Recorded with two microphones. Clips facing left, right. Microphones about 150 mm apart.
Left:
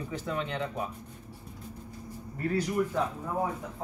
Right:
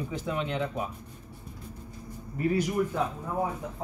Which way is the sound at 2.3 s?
10° right (ahead or behind).